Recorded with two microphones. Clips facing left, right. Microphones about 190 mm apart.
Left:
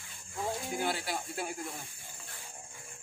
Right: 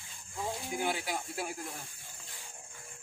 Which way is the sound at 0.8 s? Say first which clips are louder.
Right 2 dB; 15° right (ahead or behind).